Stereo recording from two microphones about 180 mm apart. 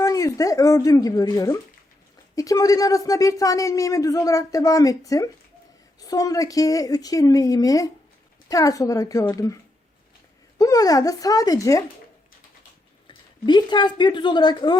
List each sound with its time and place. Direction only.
0.0 s speech: 20° left (ahead or behind)
10.6 s speech: 20° left (ahead or behind)
13.1 s speech: 25° left (ahead or behind)